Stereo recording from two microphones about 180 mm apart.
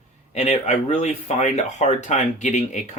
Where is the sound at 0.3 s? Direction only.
35° left (ahead or behind).